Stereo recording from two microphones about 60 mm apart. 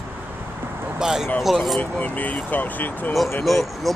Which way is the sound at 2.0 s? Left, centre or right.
Left.